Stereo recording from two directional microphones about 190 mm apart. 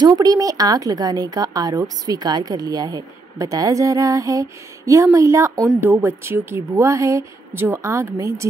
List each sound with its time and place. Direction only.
0.0 s speech: 20° right (ahead or behind)